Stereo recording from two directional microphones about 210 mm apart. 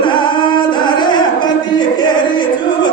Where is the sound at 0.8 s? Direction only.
20° left (ahead or behind).